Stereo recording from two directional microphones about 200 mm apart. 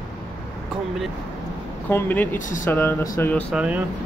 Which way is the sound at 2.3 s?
40° left (ahead or behind).